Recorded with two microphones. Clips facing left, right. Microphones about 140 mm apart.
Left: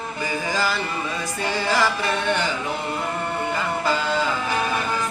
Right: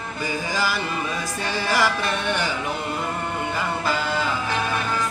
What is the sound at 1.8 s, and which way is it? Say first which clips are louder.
Carnatic music: even; 15° left (ahead or behind).